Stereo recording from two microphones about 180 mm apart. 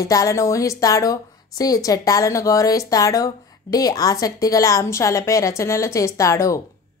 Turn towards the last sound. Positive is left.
turn(degrees=15)  # may be behind; listen again after turning